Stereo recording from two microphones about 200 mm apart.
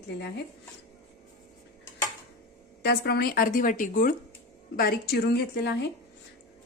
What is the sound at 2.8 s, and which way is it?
A woman's voice, 55° left (ahead or behind).